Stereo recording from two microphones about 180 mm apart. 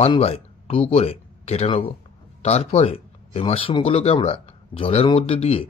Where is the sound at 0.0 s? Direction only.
35° left (ahead or behind).